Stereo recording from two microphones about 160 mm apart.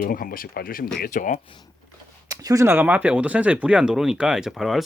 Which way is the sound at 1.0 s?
55° left (ahead or behind).